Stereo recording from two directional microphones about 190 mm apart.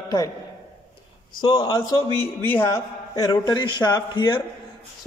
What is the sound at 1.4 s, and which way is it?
Speech, 25° left (ahead or behind).